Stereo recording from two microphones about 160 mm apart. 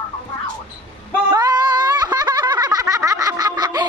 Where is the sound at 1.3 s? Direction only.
25° right (ahead or behind).